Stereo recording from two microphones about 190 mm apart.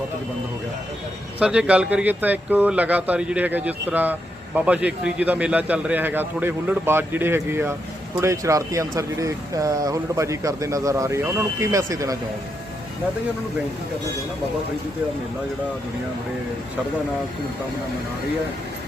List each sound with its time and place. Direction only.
1.4 s a man's voice: 5° right (ahead or behind)